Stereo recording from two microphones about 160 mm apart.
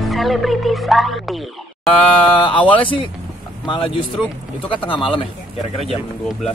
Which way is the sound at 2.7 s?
35° left (ahead or behind).